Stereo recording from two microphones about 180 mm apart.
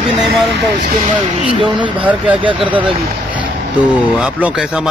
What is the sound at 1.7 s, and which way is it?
Speech, 25° right (ahead or behind).